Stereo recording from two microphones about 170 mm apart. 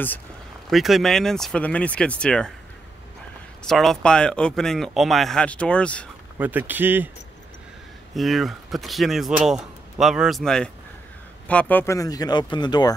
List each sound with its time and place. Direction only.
0.7 s speech: centre (ahead or behind)
3.6 s speech: centre (ahead or behind)
6.3 s speech: 10° right (ahead or behind)
8.1 s speech: centre (ahead or behind)
11.7 s speech: 15° left (ahead or behind)